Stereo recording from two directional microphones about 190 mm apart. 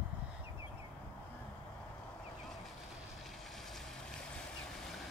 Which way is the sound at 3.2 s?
Centre (ahead or behind).